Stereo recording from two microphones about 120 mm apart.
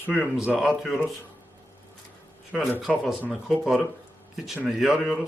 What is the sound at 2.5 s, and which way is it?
A man's voice, 5° right (ahead or behind).